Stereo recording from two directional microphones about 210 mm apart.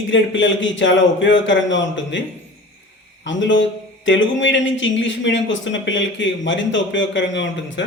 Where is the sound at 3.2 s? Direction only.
60° left (ahead or behind).